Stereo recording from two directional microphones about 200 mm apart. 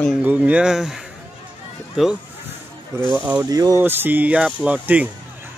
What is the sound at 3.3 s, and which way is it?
Speech, 20° right (ahead or behind).